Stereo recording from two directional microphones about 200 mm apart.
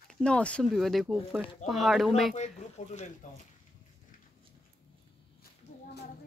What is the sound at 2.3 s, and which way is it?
Speech, 35° left (ahead or behind).